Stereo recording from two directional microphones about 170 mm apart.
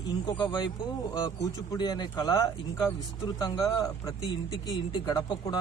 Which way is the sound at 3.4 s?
20° left (ahead or behind).